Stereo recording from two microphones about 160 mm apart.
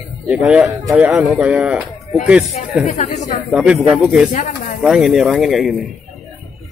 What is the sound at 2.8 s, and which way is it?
Speech, 45° left (ahead or behind).